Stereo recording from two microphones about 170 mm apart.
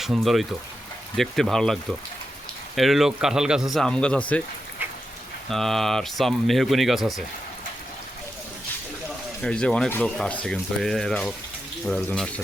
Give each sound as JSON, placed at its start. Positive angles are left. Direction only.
{"t": 0.0, "sound": "speech", "side_deg": 0}
{"t": 4.8, "sound": "rain", "side_deg": -10}
{"t": 5.5, "sound": "speech", "side_deg": 0}
{"t": 9.4, "sound": "speech", "side_deg": 5}